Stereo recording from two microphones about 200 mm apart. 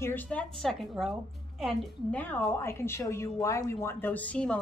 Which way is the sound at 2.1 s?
10° left (ahead or behind).